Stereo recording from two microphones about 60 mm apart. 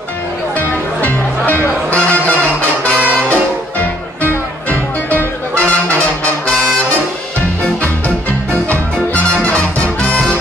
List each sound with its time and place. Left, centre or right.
0.6 s music: left
8.6 s music: left